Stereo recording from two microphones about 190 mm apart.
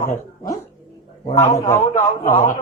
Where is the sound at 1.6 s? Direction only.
15° left (ahead or behind).